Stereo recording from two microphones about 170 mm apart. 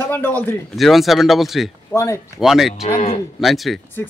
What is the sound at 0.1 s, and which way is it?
Speech, 10° left (ahead or behind).